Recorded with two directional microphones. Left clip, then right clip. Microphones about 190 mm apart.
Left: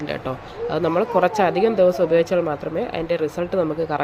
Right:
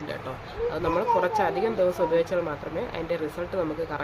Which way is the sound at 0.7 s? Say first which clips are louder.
Left 5 dB; 35° left (ahead or behind).